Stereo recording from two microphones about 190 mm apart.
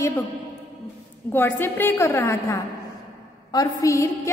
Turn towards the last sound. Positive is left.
turn(degrees=15)  # may be behind; listen again after turning